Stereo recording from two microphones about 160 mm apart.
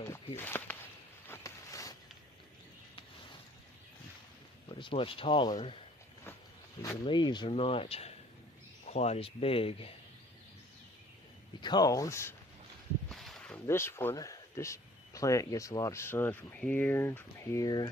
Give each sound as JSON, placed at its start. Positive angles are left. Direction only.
{"t": 0.4, "sound": "speech", "side_deg": 15}
{"t": 1.2, "sound": "a sound", "side_deg": 15}
{"t": 4.6, "sound": "speech", "side_deg": 30}
{"t": 6.8, "sound": "speech", "side_deg": 25}
{"t": 11.6, "sound": "speech", "side_deg": 25}
{"t": 13.1, "sound": "a sound", "side_deg": 0}
{"t": 13.7, "sound": "speech", "side_deg": 15}